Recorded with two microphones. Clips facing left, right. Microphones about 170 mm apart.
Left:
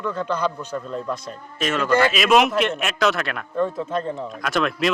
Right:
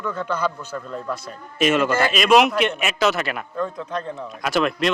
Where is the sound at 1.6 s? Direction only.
5° right (ahead or behind).